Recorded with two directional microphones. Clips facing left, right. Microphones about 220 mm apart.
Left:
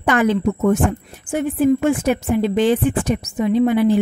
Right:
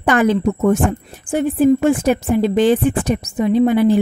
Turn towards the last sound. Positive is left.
turn(degrees=-40)  # may be behind; listen again after turning